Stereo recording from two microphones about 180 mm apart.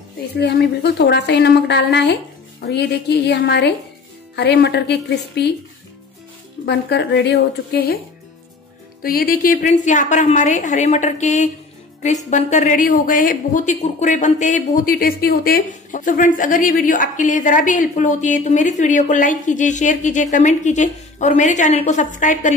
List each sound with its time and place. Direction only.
0.4 s a woman's voice: 70° left (ahead or behind)
6.6 s a woman's voice: 70° left (ahead or behind)
9.0 s a woman's voice: 55° left (ahead or behind)